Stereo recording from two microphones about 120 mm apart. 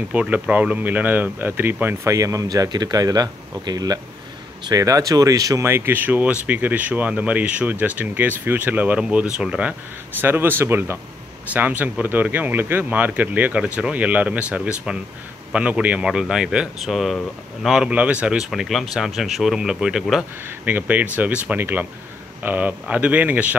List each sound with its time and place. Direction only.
0.1 s speech: 10° right (ahead or behind)
2.1 s speech: 25° right (ahead or behind); by 20.2 s centre (ahead or behind)
20.4 s speech: 15° right (ahead or behind)